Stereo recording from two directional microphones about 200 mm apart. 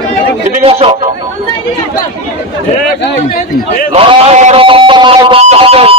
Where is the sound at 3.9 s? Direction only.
30° right (ahead or behind).